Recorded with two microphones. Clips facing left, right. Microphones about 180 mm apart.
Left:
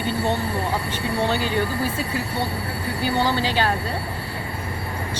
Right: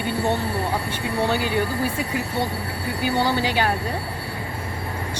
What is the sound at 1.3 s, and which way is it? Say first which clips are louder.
Speech: even; 10° right (ahead or behind).